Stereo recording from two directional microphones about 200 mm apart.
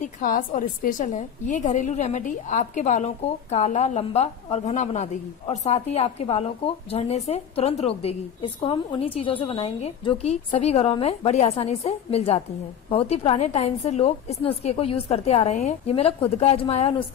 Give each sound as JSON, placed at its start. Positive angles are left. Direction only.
{"t": 0.0, "sound": "a woman's voice", "side_deg": 45}